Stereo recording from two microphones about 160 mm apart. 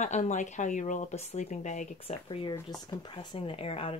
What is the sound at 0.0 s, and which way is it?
Speech, 45° left (ahead or behind).